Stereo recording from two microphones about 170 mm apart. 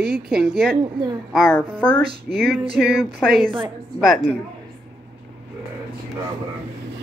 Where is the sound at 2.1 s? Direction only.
65° right (ahead or behind).